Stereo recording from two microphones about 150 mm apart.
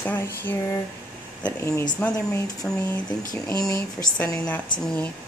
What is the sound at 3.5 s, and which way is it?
Speech, 25° left (ahead or behind).